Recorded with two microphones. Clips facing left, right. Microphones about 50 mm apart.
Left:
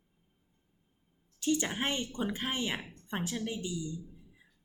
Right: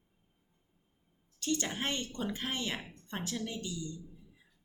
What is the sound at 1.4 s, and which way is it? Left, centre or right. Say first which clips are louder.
A woman's voice: left 3 dB; centre.